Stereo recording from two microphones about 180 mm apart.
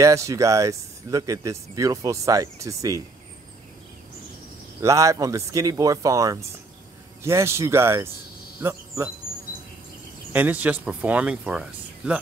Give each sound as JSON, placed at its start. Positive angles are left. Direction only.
{"t": 0.0, "sound": "speech", "side_deg": -15}
{"t": 4.8, "sound": "speech", "side_deg": -15}
{"t": 10.3, "sound": "speech", "side_deg": -10}